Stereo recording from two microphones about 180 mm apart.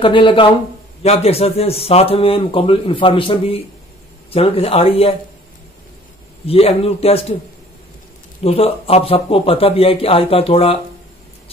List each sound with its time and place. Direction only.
0.0 s a man's voice: 30° left (ahead or behind)
6.4 s a man's voice: 35° left (ahead or behind)
8.5 s a man's voice: 35° left (ahead or behind)